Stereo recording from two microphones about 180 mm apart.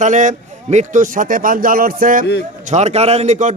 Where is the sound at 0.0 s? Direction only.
45° right (ahead or behind).